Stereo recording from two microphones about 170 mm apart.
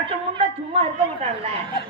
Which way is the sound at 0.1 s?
30° right (ahead or behind).